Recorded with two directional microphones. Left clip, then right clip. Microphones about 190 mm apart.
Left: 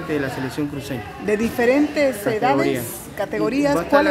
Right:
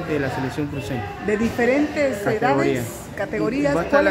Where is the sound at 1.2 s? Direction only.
35° left (ahead or behind).